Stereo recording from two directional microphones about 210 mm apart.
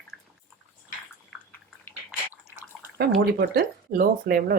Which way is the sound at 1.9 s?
5° right (ahead or behind).